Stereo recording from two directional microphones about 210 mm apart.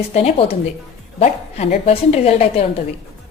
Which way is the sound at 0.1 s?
30° left (ahead or behind).